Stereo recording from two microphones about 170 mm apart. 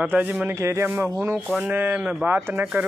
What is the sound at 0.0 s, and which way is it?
Speech, 10° right (ahead or behind).